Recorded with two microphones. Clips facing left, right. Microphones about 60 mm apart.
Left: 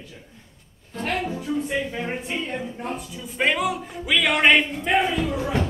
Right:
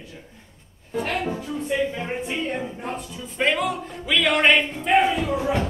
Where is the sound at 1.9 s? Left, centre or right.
Centre.